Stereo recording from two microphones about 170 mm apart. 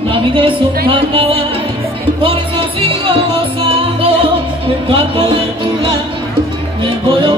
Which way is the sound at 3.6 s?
30° right (ahead or behind).